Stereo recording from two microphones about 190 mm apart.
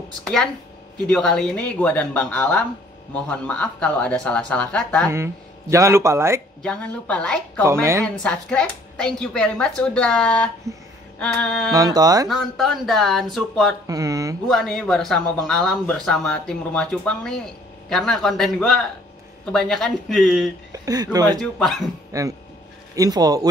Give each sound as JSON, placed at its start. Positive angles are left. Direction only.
{"t": 0.2, "sound": "speech", "side_deg": 5}
{"t": 5.1, "sound": "speech", "side_deg": -15}
{"t": 6.6, "sound": "speech", "side_deg": 5}
{"t": 7.6, "sound": "speech", "side_deg": -15}
{"t": 8.0, "sound": "speech", "side_deg": 5}
{"t": 11.7, "sound": "speech", "side_deg": -20}
{"t": 12.3, "sound": "speech", "side_deg": 0}
{"t": 13.8, "sound": "speech", "side_deg": -15}
{"t": 14.5, "sound": "speech", "side_deg": 0}
{"t": 20.7, "sound": "speech", "side_deg": -20}
{"t": 21.4, "sound": "speech", "side_deg": 5}
{"t": 22.1, "sound": "speech", "side_deg": -15}